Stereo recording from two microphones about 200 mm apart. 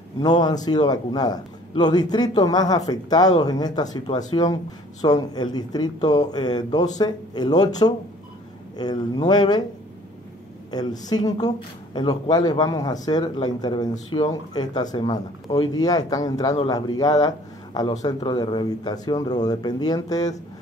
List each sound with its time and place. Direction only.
0.2 s a man's voice: 20° left (ahead or behind)
10.7 s a man's voice: 20° left (ahead or behind)